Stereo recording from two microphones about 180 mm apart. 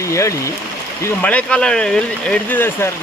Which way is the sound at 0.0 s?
15° left (ahead or behind).